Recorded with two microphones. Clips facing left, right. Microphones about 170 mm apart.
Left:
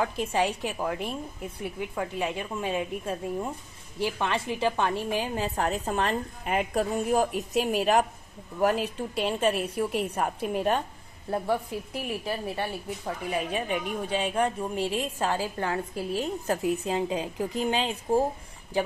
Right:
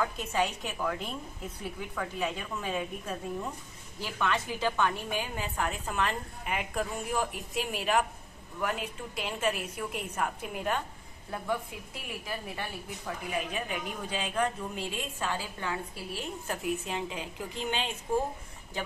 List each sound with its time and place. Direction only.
0.0 s speech: 30° left (ahead or behind)
2.0 s a woman's voice: 30° left (ahead or behind)